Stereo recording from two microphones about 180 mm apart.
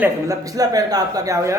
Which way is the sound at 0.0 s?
20° right (ahead or behind).